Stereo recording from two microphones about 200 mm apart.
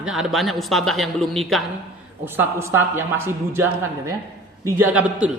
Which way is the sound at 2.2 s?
10° right (ahead or behind).